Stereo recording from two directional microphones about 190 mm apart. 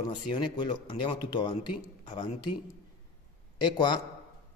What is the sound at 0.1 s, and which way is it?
Speech, 25° left (ahead or behind).